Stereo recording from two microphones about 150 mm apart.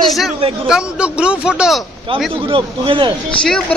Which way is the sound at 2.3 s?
35° right (ahead or behind).